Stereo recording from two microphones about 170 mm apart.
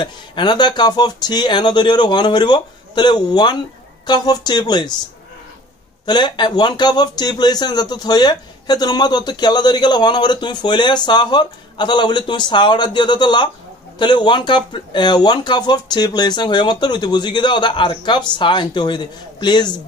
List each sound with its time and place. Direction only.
0.0 s speech: 25° left (ahead or behind)
6.0 s speech: 25° left (ahead or behind)